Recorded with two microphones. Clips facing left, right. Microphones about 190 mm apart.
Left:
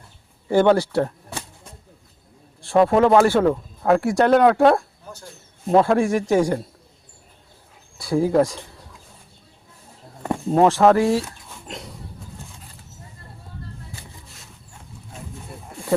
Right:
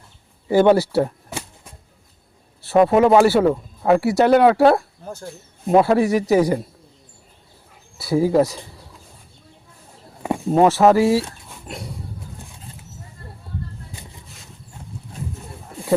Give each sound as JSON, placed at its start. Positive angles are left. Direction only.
{"t": 0.4, "sound": "speech", "side_deg": -10}
{"t": 2.6, "sound": "a man's voice", "side_deg": -5}
{"t": 7.9, "sound": "a man's voice", "side_deg": -5}
{"t": 10.2, "sound": "speech", "side_deg": -10}
{"t": 11.4, "sound": "dog", "side_deg": -10}
{"t": 14.0, "sound": "a sound", "side_deg": -20}